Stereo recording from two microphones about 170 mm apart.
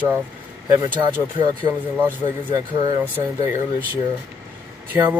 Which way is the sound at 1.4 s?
25° right (ahead or behind).